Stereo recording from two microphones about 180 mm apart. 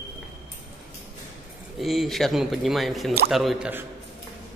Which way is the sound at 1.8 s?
Centre (ahead or behind).